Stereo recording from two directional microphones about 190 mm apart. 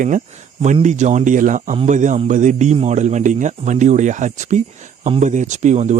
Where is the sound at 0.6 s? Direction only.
40° right (ahead or behind).